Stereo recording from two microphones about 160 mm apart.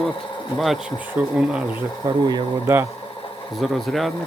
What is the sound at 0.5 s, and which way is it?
Speech, centre (ahead or behind).